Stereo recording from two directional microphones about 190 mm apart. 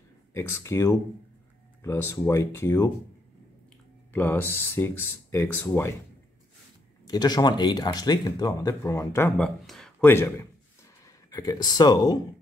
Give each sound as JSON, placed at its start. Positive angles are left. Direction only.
{"t": 0.3, "sound": "speech", "side_deg": 15}
{"t": 4.1, "sound": "speech", "side_deg": 10}
{"t": 7.1, "sound": "speech", "side_deg": 20}
{"t": 9.4, "sound": "speech", "side_deg": 5}